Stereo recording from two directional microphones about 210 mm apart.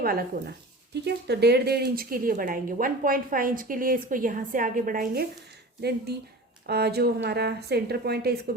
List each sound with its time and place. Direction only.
0.0 s speech: 45° right (ahead or behind)
6.7 s speech: 50° right (ahead or behind)